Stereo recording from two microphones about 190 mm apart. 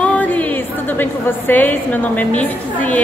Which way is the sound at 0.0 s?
10° left (ahead or behind).